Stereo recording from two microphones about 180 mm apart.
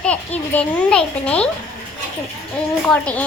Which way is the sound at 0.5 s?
5° left (ahead or behind).